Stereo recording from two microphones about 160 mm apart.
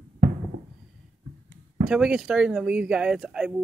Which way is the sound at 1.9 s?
5° right (ahead or behind).